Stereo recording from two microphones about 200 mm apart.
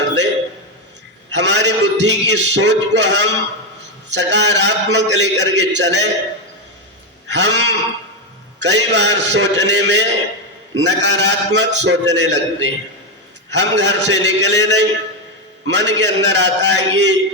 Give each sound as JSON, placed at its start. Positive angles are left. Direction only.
{"t": 1.3, "sound": "a man's voice", "side_deg": -60}
{"t": 7.3, "sound": "a man's voice", "side_deg": -60}